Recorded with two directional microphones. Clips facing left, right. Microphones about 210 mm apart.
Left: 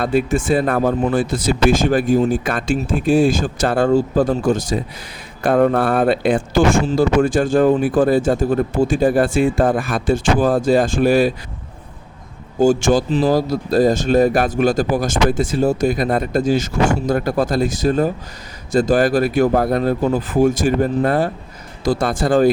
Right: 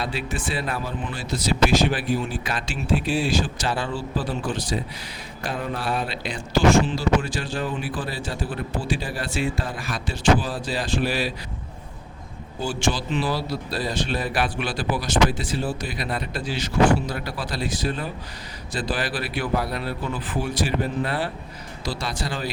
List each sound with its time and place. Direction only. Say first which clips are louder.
0.0 s speech: left 11 dB; 50° left (ahead or behind)
12.5 s speech: left 12 dB; 45° left (ahead or behind)